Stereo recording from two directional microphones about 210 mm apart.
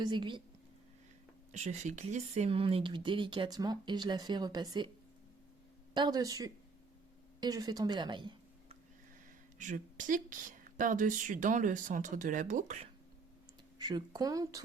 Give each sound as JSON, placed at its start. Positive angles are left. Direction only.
{"t": 0.0, "sound": "speech", "side_deg": -20}
{"t": 1.5, "sound": "speech", "side_deg": -35}
{"t": 5.9, "sound": "a woman's voice", "side_deg": -20}
{"t": 9.6, "sound": "speech", "side_deg": -35}
{"t": 13.7, "sound": "speech", "side_deg": -20}